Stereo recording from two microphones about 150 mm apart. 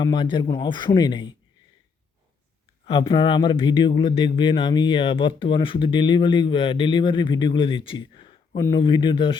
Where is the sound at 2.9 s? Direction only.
35° left (ahead or behind).